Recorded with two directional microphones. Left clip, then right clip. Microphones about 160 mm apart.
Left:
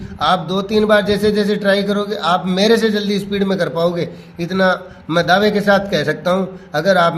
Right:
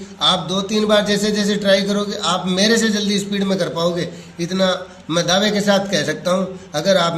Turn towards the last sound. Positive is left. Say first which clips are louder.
# left 3 dB
turn(degrees=55)  # may be behind; listen again after turning